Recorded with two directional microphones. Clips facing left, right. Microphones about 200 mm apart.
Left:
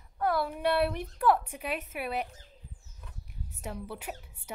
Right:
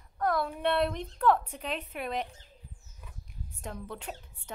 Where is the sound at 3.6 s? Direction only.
10° left (ahead or behind).